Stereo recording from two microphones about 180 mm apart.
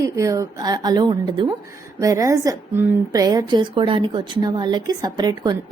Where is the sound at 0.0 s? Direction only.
15° right (ahead or behind).